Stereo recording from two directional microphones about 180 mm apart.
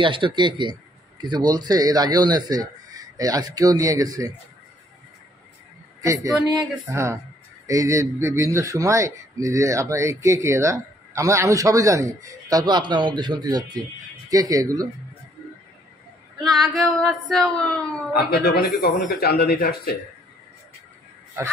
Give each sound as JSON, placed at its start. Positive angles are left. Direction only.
{"t": 0.0, "sound": "a man's voice", "side_deg": -25}
{"t": 6.0, "sound": "a man's voice", "side_deg": -20}
{"t": 16.4, "sound": "female singing", "side_deg": 0}
{"t": 18.1, "sound": "speech", "side_deg": 60}
{"t": 18.9, "sound": "female singing", "side_deg": 0}
{"t": 19.1, "sound": "speech", "side_deg": 60}